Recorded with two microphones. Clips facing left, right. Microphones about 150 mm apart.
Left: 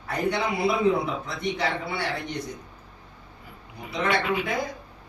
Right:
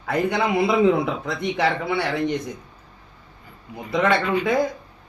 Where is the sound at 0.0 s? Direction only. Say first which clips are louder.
Right 4 dB; 90° right.